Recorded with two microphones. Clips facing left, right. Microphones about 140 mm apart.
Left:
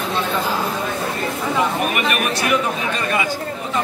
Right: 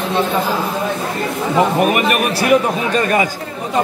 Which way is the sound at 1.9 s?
35° right (ahead or behind).